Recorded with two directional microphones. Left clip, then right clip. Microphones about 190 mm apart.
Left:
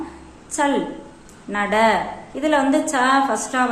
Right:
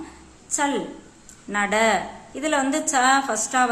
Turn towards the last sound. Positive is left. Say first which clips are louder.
# left 2 dB
turn(degrees=-20)  # may be behind; listen again after turning